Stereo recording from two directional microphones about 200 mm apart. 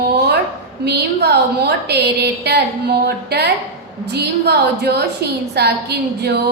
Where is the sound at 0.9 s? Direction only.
55° right (ahead or behind).